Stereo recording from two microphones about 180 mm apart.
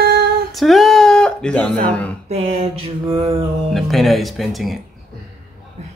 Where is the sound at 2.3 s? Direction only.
35° right (ahead or behind).